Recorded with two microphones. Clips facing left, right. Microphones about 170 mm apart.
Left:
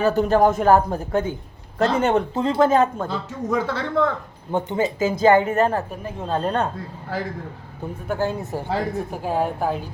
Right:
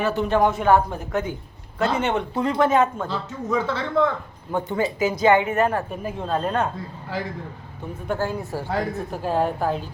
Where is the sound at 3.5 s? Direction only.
60° left (ahead or behind).